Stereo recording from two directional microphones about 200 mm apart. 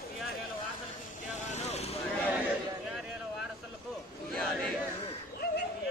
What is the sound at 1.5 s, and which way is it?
Vehicle, 35° left (ahead or behind).